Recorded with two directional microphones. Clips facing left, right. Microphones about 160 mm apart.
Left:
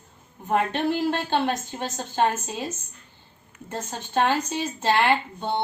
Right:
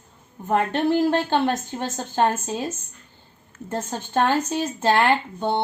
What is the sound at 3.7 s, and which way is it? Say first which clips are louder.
A woman's voice: right 4 dB; 50° right (ahead or behind).